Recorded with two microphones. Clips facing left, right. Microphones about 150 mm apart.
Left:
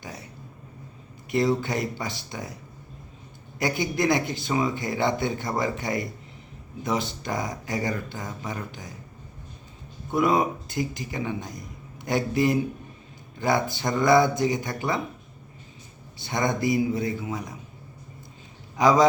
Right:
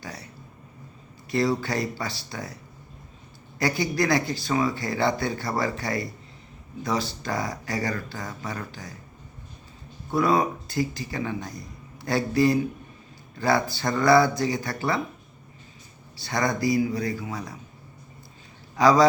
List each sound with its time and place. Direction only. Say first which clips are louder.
0.0 s a sound: even; 20° left (ahead or behind)
1.3 s speech: left 1 dB; 20° left (ahead or behind)
3.6 s speech: even; 20° left (ahead or behind)
10.1 s speech: even; 20° left (ahead or behind)
16.1 s speech: even; 20° left (ahead or behind)
18.8 s speech: right 1 dB; 20° left (ahead or behind)